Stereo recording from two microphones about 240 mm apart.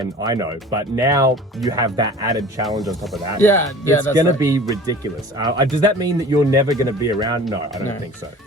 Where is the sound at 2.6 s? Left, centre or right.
Centre.